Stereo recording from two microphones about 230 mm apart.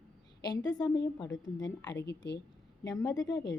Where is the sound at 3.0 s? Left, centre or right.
Centre.